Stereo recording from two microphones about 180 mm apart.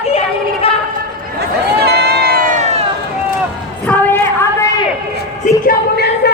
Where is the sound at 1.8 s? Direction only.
65° right (ahead or behind).